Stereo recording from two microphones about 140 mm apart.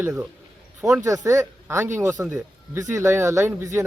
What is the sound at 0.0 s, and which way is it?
Speech, 15° right (ahead or behind).